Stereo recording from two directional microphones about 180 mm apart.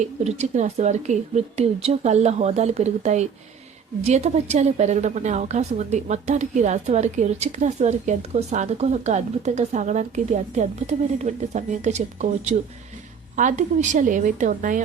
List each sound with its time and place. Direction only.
0.3 s a woman's voice: 40° right (ahead or behind)